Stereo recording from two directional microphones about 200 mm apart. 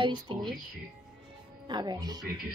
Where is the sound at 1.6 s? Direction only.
20° right (ahead or behind).